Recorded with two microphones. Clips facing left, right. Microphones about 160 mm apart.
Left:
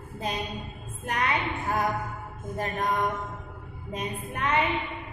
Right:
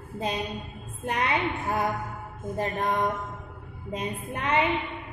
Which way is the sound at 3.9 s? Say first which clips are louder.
Right 1 dB; 30° right (ahead or behind).